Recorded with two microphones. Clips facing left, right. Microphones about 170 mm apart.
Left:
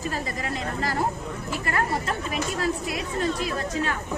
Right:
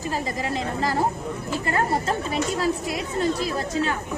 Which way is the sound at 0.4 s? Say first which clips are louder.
Right 3 dB; 30° right (ahead or behind).